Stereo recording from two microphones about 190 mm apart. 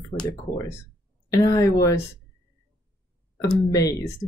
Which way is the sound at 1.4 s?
15° left (ahead or behind).